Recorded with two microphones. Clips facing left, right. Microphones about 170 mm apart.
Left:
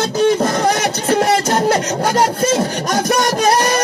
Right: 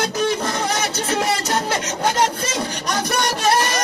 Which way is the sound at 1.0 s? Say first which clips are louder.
Left 9 dB; 45° left (ahead or behind).